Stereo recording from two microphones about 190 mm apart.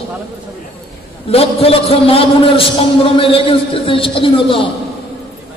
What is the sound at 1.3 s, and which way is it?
A man's voice, 30° left (ahead or behind).